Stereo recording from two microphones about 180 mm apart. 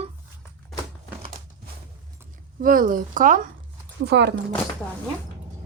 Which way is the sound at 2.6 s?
50° right (ahead or behind).